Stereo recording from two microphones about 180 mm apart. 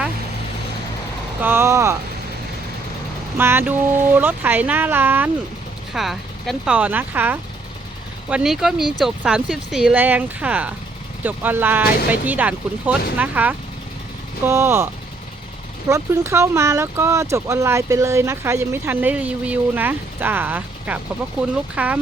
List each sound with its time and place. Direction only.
1.4 s speech: 10° right (ahead or behind)
3.3 s speech: 10° right (ahead or behind)
15.9 s speech: 15° right (ahead or behind)